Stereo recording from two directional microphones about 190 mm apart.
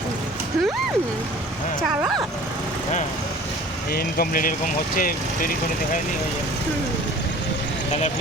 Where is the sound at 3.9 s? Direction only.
50° left (ahead or behind).